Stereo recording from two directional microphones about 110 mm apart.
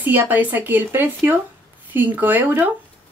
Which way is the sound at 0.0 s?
15° right (ahead or behind).